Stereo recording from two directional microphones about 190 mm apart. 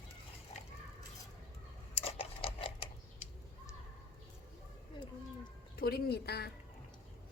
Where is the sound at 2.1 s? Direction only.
30° left (ahead or behind).